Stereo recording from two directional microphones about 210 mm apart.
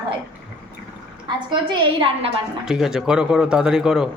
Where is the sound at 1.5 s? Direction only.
25° right (ahead or behind).